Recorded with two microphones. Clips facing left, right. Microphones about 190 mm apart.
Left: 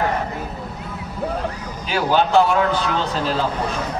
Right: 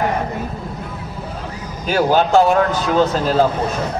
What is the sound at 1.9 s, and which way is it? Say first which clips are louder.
A man's voice: right 4 dB; 45° right (ahead or behind).